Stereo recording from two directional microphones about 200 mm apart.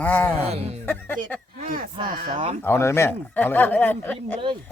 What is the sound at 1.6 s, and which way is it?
Speech, 45° right (ahead or behind).